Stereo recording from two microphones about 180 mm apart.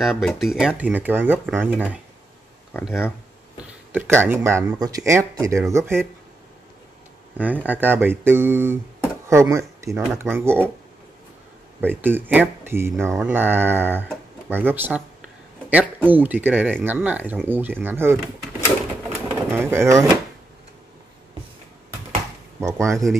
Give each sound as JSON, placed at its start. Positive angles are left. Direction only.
{"t": 0.0, "sound": "speech", "side_deg": 0}
{"t": 7.3, "sound": "speech", "side_deg": -10}
{"t": 11.8, "sound": "speech", "side_deg": -10}
{"t": 19.0, "sound": "bird", "side_deg": -10}
{"t": 22.6, "sound": "speech", "side_deg": -15}